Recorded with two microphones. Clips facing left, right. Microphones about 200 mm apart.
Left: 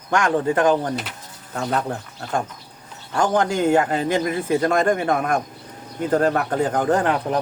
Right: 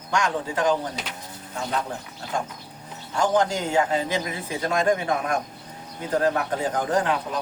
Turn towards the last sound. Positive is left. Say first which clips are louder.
# left 4 dB
turn(degrees=55)  # may be behind; listen again after turning